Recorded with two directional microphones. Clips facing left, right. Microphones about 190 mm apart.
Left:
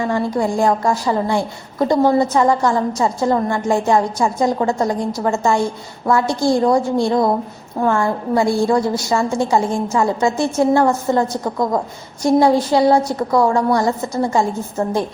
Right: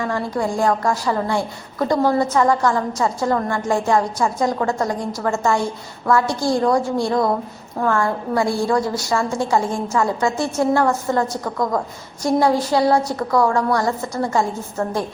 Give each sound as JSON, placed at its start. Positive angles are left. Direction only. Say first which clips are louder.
{"t": 0.0, "sound": "a woman's voice", "louder": "left 4 dB", "side_deg": 20}